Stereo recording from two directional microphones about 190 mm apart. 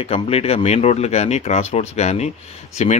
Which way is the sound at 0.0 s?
30° left (ahead or behind).